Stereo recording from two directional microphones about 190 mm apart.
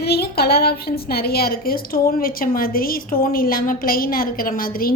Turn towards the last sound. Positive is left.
turn(degrees=50)  # may be behind; listen again after turning